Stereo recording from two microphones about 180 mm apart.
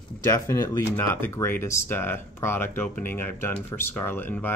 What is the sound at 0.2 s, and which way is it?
Speech, 15° left (ahead or behind).